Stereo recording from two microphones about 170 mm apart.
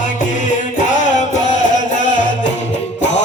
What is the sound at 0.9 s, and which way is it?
Music, 45° left (ahead or behind).